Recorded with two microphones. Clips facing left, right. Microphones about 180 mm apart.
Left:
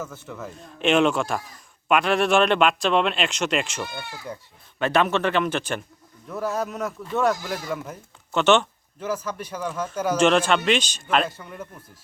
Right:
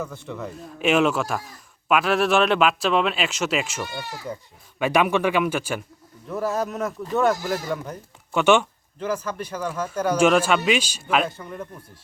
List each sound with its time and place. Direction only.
0.0 s a man's voice: 5° left (ahead or behind)
8.3 s speech: 10° right (ahead or behind)
9.0 s speech: 10° left (ahead or behind)
9.6 s a man's voice: 10° right (ahead or behind)
9.9 s speech: 10° left (ahead or behind)
10.2 s a man's voice: 10° right (ahead or behind)